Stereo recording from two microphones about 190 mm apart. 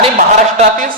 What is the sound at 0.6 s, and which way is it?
Speech, 45° right (ahead or behind).